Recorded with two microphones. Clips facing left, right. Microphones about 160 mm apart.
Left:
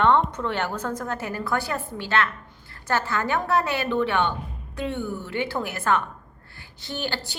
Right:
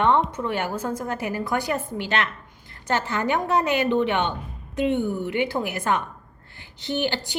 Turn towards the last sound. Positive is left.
turn(degrees=-15)  # may be behind; listen again after turning